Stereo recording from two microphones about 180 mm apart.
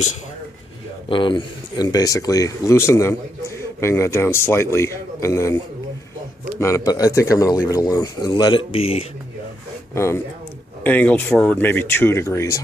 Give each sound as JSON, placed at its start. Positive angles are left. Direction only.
{"t": 1.0, "sound": "speech", "side_deg": 25}
{"t": 6.6, "sound": "speech", "side_deg": 20}
{"t": 9.9, "sound": "speech", "side_deg": 15}